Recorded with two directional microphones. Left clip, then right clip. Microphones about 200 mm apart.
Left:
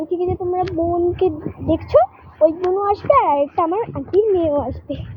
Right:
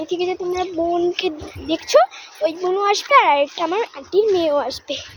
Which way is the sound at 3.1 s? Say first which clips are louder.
Right 1 dB; 20° right (ahead or behind).